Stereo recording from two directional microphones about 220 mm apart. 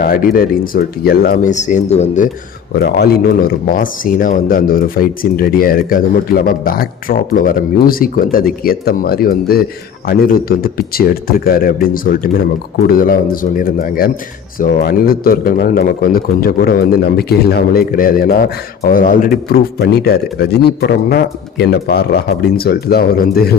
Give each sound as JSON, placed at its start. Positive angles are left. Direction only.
{"t": 0.0, "sound": "speech", "side_deg": 40}
{"t": 2.7, "sound": "a man's voice", "side_deg": 45}